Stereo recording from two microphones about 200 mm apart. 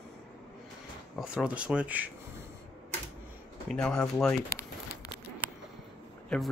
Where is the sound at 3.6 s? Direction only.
5° left (ahead or behind).